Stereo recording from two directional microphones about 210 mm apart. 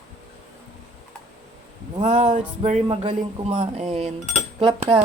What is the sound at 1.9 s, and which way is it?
Speech, 35° right (ahead or behind).